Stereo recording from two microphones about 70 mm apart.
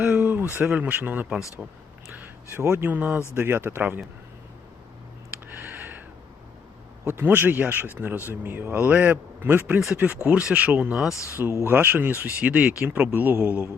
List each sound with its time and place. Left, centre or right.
0.1 s a sound: right
0.6 s speech: centre
1.6 s speech: centre
2.1 s a sound: right
2.6 s speech: right
2.9 s speech: right
5.5 s a sound: right
7.1 s speech: right
9.9 s speech: centre
11.1 s speech: left
11.6 s speech: right